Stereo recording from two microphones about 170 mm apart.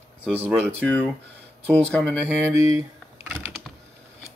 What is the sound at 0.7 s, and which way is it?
Speech, 5° left (ahead or behind).